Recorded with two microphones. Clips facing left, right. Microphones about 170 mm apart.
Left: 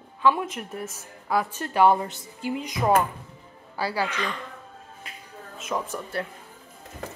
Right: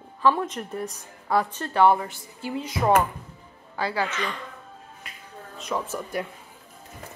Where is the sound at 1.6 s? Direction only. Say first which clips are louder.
Left 1 dB; 15° left (ahead or behind).